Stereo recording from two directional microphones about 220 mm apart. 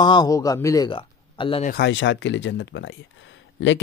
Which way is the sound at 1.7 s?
50° left (ahead or behind).